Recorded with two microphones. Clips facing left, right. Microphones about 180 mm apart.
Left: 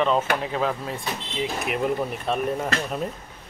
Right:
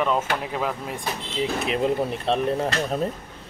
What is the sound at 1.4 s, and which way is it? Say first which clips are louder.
Speech: right 2 dB; 30° right (ahead or behind).